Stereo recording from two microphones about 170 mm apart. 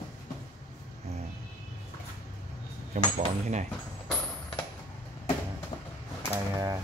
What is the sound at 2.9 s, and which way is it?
Speech, 45° right (ahead or behind).